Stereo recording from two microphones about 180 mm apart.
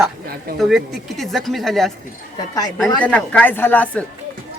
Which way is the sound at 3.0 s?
10° left (ahead or behind).